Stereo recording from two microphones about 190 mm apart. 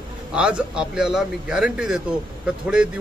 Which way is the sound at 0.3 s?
5° right (ahead or behind).